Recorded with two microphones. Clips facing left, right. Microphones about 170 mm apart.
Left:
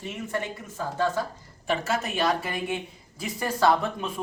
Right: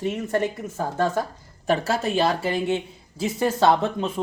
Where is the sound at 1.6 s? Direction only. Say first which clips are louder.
Right 5 dB; 35° right (ahead or behind).